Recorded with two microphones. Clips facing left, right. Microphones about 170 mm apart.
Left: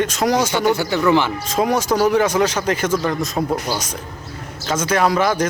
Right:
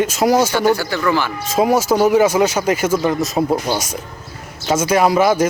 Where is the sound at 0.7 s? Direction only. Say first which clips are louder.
Right 1 dB; 20° left (ahead or behind).